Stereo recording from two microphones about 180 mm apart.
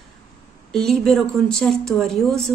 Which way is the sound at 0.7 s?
5° left (ahead or behind).